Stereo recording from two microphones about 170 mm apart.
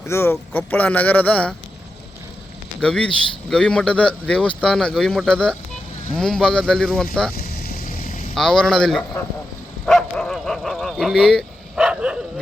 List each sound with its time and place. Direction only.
0.0 s speech: 15° left (ahead or behind)
2.8 s speech: 5° left (ahead or behind)
7.3 s vehicle: 65° left (ahead or behind)
8.4 s speech: 5° left (ahead or behind)
9.8 s bow-wow: 5° left (ahead or behind)